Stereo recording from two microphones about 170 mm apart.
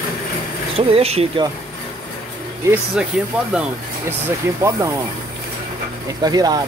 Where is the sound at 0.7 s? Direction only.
35° right (ahead or behind).